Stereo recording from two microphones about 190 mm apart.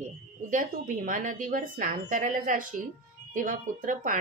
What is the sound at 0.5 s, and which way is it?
A woman's voice, 45° right (ahead or behind).